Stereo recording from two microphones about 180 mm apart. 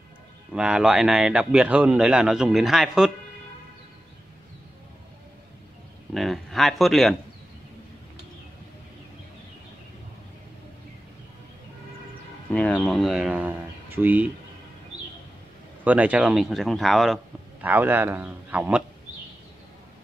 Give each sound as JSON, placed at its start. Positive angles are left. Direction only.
{"t": 0.5, "sound": "speech", "side_deg": -5}
{"t": 6.1, "sound": "speech", "side_deg": 0}
{"t": 12.4, "sound": "speech", "side_deg": 5}
{"t": 15.8, "sound": "speech", "side_deg": -10}